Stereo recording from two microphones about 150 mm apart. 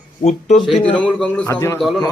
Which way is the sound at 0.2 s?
50° left (ahead or behind).